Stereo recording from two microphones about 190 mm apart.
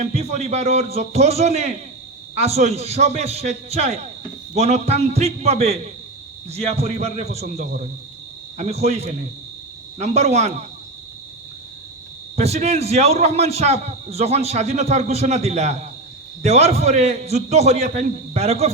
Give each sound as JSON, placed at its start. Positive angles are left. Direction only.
{"t": 0.0, "sound": "a man's voice", "side_deg": -35}
{"t": 12.4, "sound": "a man's voice", "side_deg": -35}